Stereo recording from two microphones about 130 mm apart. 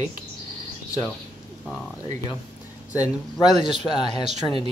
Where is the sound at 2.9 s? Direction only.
30° left (ahead or behind).